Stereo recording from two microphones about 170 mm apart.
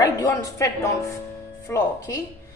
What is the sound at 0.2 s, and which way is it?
Speech, 20° left (ahead or behind).